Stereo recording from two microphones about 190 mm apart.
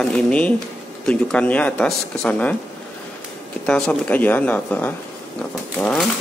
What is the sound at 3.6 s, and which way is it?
Speech, 5° left (ahead or behind).